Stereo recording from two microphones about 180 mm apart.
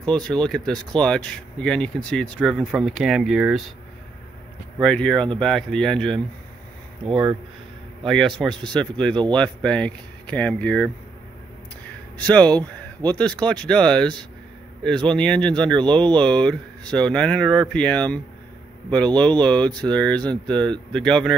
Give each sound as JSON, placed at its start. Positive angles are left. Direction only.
{"t": 0.0, "sound": "speech", "side_deg": 5}
{"t": 4.8, "sound": "speech", "side_deg": 5}
{"t": 7.1, "sound": "speech", "side_deg": -25}
{"t": 8.0, "sound": "speech", "side_deg": 0}
{"t": 12.2, "sound": "speech", "side_deg": 5}